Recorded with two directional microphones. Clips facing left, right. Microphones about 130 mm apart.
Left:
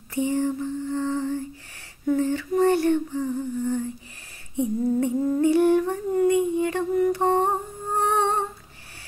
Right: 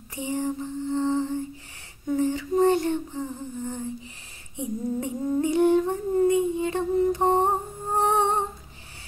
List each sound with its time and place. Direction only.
0.1 s lullaby: 20° right (ahead or behind)
2.0 s humming: 20° right (ahead or behind)